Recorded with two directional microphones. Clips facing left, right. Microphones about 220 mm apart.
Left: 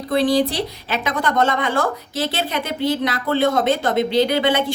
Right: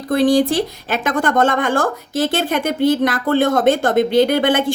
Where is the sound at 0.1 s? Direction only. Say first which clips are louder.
Right 4 dB; 45° right (ahead or behind).